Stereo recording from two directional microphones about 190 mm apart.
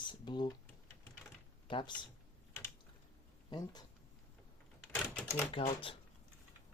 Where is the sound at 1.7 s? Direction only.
25° left (ahead or behind).